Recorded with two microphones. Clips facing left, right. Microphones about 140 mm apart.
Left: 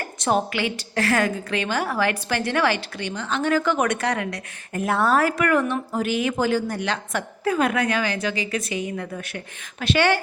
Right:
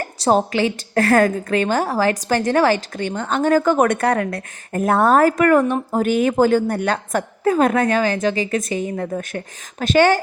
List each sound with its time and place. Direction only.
0.0 s a woman's voice: 35° right (ahead or behind)